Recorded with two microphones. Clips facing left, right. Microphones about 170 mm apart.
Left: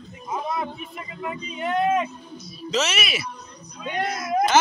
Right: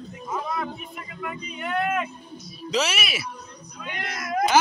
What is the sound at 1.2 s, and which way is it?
Speech, 25° left (ahead or behind).